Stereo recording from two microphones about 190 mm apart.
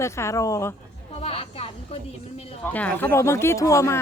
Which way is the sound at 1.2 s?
30° left (ahead or behind).